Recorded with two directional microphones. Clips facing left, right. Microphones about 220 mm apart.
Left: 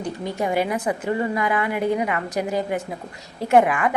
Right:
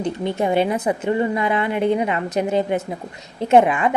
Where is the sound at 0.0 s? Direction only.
25° right (ahead or behind).